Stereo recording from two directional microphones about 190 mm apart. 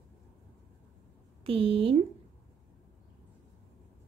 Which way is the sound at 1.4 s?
30° right (ahead or behind).